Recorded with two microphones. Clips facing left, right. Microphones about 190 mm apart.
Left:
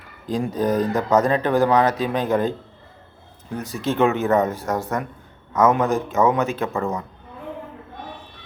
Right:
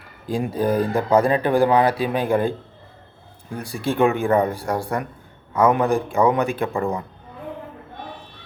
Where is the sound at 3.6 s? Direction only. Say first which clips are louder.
Even; 10° right (ahead or behind).